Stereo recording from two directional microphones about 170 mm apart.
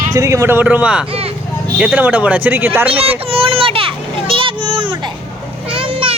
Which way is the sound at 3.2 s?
35° right (ahead or behind).